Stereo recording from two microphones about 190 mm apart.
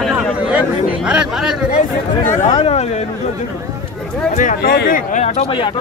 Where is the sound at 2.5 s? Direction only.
30° left (ahead or behind).